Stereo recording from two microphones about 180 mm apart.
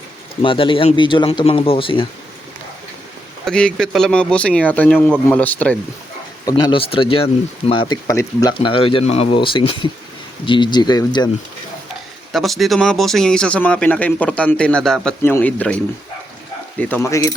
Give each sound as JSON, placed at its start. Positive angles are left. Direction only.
{"t": 0.4, "sound": "speech", "side_deg": 30}
{"t": 3.4, "sound": "speech", "side_deg": 5}
{"t": 6.4, "sound": "speech", "side_deg": 20}
{"t": 12.3, "sound": "speech", "side_deg": 0}
{"t": 16.9, "sound": "speech", "side_deg": 15}